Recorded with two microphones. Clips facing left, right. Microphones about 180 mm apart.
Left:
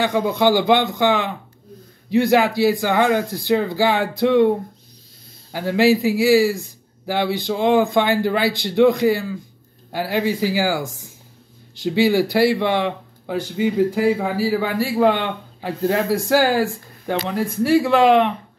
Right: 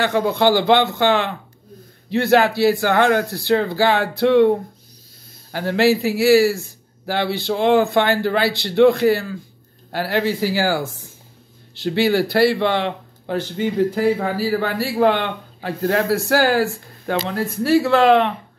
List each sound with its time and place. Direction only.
0.0 s speech: 15° left (ahead or behind)
2.0 s speech: 15° left (ahead or behind)
5.5 s speech: 15° left (ahead or behind)
11.8 s speech: 15° left (ahead or behind)